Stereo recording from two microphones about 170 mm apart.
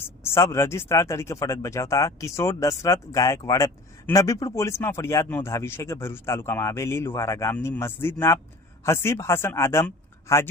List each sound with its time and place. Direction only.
0.0 s speech: 15° left (ahead or behind)